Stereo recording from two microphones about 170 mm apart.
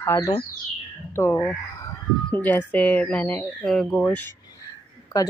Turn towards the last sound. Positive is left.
turn(degrees=20)  # may be behind; listen again after turning